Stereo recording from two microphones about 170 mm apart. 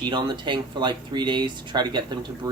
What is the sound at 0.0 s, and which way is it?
Speech, 25° right (ahead or behind).